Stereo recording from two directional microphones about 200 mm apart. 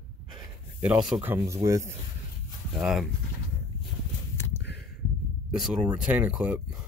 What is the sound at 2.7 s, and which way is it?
Speech, centre (ahead or behind).